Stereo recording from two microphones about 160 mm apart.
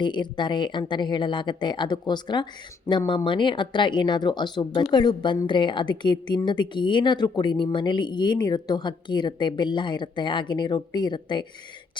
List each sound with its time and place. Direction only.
0.0 s speech: 30° left (ahead or behind)